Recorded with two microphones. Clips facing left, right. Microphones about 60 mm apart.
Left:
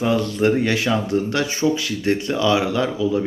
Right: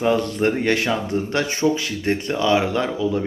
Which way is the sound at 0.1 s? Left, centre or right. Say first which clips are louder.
Left 3 dB; right.